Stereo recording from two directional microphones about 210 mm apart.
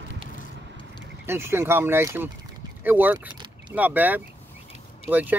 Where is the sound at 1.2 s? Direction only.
10° right (ahead or behind).